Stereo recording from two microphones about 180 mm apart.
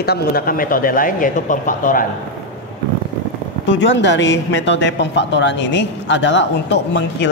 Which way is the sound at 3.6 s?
90° left.